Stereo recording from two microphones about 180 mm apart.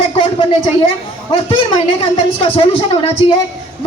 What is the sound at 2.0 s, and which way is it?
Speech, 30° left (ahead or behind).